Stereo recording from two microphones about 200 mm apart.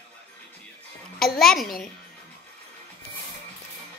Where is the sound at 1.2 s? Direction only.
Centre (ahead or behind).